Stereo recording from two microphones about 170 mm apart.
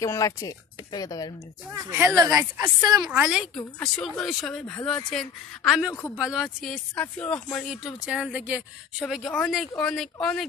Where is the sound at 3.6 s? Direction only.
5° left (ahead or behind).